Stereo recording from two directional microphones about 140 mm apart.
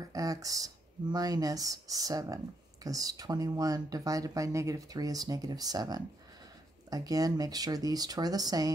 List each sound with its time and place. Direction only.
0.0 s speech: 25° right (ahead or behind)